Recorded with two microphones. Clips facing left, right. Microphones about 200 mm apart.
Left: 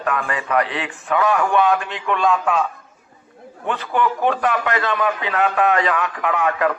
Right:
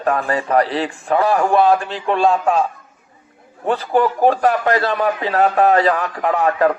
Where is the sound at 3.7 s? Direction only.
35° right (ahead or behind).